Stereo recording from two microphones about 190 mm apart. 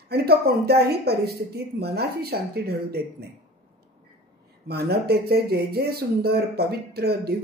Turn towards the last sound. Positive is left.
turn(degrees=-55)  # may be behind; listen again after turning